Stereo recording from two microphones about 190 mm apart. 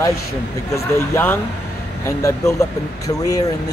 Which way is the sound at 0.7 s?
15° left (ahead or behind).